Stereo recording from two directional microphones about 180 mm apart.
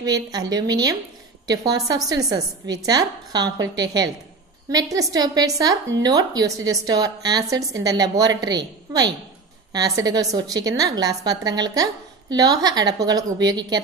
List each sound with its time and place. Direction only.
0.0 s a woman's voice: 20° right (ahead or behind)